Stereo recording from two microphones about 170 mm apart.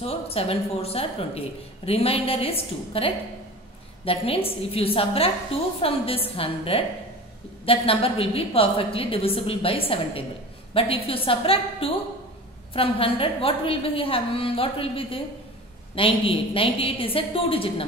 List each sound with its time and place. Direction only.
0.0 s a woman's voice: 35° left (ahead or behind)